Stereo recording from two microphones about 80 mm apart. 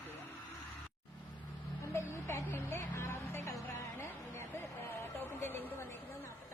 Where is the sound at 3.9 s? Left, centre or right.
Left.